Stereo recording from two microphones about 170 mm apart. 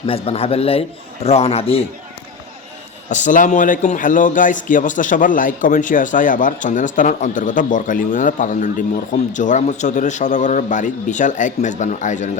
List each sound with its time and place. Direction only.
0.0 s a man's voice: 35° left (ahead or behind)
3.1 s a man's voice: 45° left (ahead or behind)